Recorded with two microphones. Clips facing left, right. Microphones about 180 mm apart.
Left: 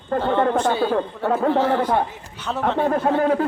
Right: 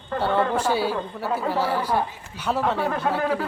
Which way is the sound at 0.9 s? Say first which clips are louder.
Left 6 dB; 50° left (ahead or behind).